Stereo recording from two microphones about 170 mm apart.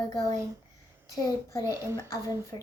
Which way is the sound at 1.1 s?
20° left (ahead or behind).